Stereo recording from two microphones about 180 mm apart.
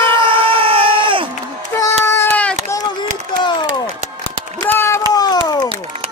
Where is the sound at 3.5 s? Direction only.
25° left (ahead or behind).